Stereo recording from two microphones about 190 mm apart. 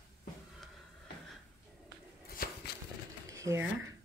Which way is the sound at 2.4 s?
50° left (ahead or behind).